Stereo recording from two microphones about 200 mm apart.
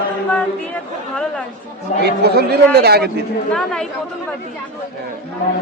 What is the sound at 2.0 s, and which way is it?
Speech, 55° right (ahead or behind).